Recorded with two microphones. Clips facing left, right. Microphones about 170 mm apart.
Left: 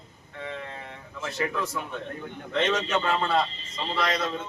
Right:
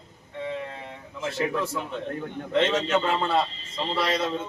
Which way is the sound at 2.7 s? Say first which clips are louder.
Right 2 dB; 20° right (ahead or behind).